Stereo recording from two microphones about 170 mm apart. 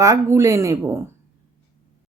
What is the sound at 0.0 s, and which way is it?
Speech, 20° right (ahead or behind).